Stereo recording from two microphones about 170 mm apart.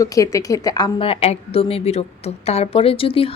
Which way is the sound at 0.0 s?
20° left (ahead or behind).